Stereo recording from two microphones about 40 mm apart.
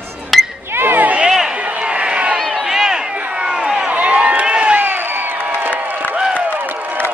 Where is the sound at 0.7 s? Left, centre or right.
Right.